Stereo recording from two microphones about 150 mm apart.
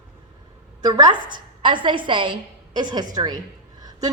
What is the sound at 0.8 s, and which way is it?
A woman's voice, 25° right (ahead or behind).